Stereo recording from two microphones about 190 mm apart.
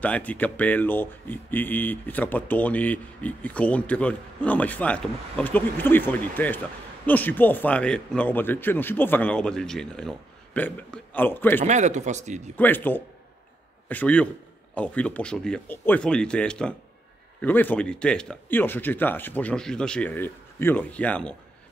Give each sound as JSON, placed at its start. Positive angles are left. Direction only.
{"t": 0.0, "sound": "speech", "side_deg": 10}
{"t": 11.6, "sound": "speech", "side_deg": -40}
{"t": 12.5, "sound": "speech", "side_deg": 10}